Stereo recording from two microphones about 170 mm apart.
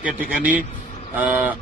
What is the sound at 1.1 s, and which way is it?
Speech, 10° right (ahead or behind).